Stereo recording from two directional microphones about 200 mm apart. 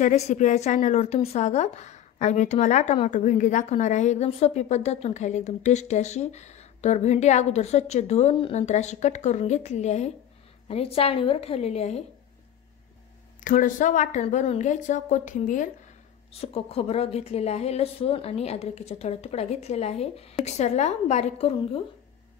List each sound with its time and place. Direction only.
0.0 s a woman's voice: 35° left (ahead or behind)
13.4 s a woman's voice: 40° left (ahead or behind)
16.3 s a woman's voice: 30° left (ahead or behind)